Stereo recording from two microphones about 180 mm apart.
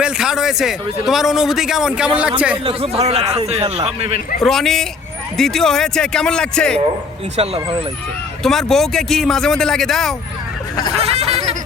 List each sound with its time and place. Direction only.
0.0 s a man's voice: 5° right (ahead or behind)
2.6 s speech: 30° right (ahead or behind)
4.4 s a man's voice: centre (ahead or behind)
8.4 s a man's voice: centre (ahead or behind)
10.9 s a sound: 35° right (ahead or behind)